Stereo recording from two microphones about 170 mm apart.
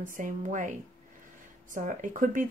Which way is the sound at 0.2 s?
50° right (ahead or behind).